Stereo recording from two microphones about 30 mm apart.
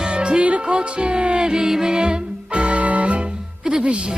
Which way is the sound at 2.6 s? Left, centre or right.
Right.